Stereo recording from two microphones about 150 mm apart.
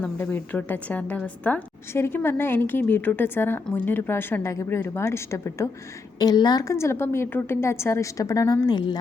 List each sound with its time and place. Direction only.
0.0 s a woman's voice: 10° left (ahead or behind); by 9.0 s 25° left (ahead or behind)